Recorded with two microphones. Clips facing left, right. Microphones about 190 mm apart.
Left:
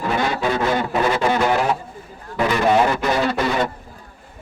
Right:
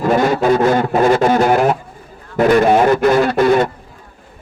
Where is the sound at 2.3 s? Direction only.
50° right (ahead or behind).